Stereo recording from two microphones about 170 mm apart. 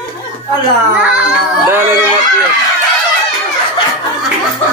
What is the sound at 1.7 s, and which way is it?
Speech, 15° right (ahead or behind).